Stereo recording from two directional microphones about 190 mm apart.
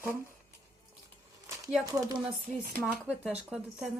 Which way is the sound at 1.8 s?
20° right (ahead or behind).